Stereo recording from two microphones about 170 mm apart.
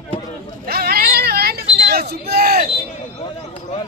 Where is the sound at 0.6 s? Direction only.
65° right (ahead or behind).